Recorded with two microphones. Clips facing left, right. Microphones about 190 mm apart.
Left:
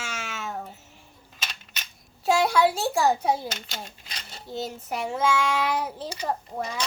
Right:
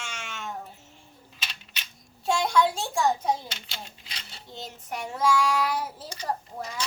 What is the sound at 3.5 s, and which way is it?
Speech, 45° left (ahead or behind).